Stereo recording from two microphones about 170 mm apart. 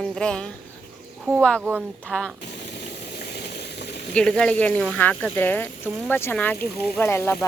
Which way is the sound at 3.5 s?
80° left.